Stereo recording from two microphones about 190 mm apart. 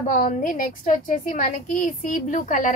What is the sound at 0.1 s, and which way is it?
A woman's voice, 45° left (ahead or behind).